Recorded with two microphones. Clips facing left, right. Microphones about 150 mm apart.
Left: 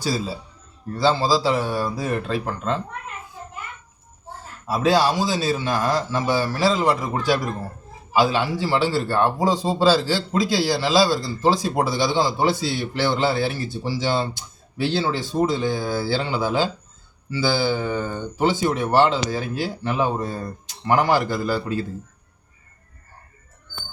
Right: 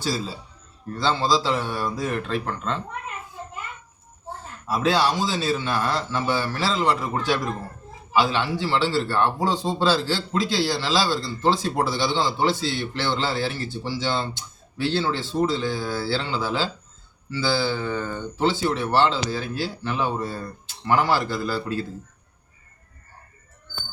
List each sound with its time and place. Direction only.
0.9 s speech: 10° left (ahead or behind)
4.6 s speech: 10° left (ahead or behind)